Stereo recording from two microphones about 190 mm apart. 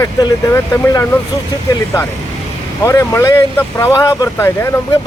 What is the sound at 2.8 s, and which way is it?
Speech, 15° left (ahead or behind).